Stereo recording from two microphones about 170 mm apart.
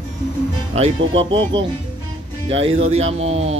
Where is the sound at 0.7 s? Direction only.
35° right (ahead or behind).